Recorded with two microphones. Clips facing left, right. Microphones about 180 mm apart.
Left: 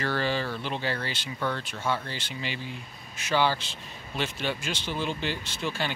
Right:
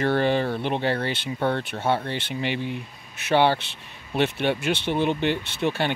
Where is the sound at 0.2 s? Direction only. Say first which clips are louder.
Right 7 dB; 55° right (ahead or behind).